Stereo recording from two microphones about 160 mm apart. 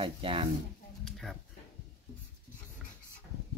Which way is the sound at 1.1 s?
Centre (ahead or behind).